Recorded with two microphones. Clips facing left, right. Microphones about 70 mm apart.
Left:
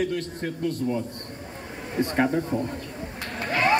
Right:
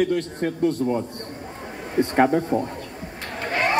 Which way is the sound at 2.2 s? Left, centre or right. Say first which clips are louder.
Right 5 dB; right.